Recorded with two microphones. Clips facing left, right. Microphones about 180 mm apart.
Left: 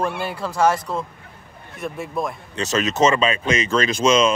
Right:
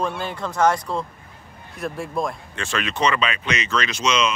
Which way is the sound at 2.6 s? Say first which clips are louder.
Left 6 dB; 40° left (ahead or behind).